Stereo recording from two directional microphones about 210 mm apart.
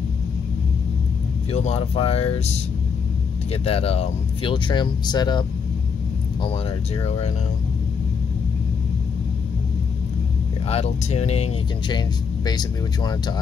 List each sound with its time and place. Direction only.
1.5 s speech: 30° left (ahead or behind)
3.6 s speech: 30° left (ahead or behind)
7.1 s speech: 30° left (ahead or behind)
10.7 s speech: 30° left (ahead or behind)
12.4 s speech: 20° left (ahead or behind)